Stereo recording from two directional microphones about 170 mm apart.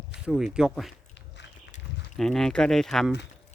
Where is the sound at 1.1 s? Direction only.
90° left.